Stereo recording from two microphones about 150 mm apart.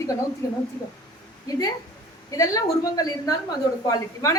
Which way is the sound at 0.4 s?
25° left (ahead or behind).